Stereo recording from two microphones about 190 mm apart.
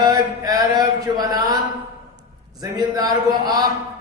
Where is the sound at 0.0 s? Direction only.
20° right (ahead or behind).